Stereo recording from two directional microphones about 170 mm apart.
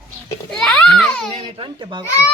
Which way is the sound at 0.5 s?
5° left (ahead or behind).